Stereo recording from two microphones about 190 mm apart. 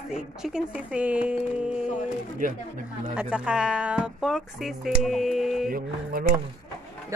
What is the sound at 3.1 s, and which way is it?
Speech, 5° right (ahead or behind).